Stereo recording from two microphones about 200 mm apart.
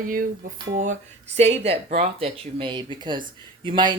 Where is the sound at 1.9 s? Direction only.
30° right (ahead or behind).